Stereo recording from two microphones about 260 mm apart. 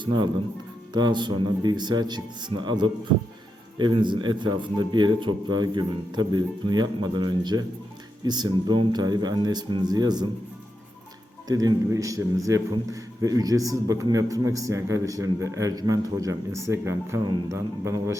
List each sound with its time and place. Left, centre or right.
0.0 s a man's voice: centre
11.4 s a man's voice: centre